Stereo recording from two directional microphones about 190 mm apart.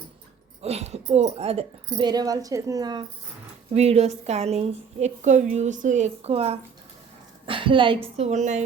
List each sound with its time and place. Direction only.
0.6 s speech: 35° right (ahead or behind)
3.7 s a woman's voice: 35° right (ahead or behind)